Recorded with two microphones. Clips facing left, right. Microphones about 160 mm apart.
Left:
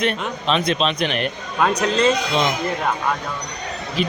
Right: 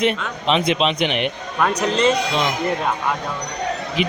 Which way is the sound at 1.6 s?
10° left (ahead or behind).